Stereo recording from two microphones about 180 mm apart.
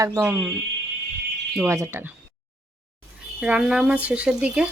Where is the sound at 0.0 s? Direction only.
15° right (ahead or behind).